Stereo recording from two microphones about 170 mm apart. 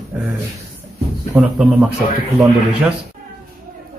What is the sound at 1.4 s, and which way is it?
Speech, 5° right (ahead or behind).